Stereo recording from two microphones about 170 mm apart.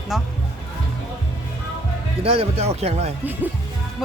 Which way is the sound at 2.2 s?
35° right (ahead or behind).